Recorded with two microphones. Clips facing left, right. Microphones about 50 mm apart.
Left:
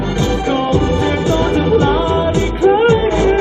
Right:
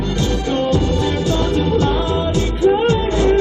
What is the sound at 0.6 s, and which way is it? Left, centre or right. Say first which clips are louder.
Music: left 3 dB; left.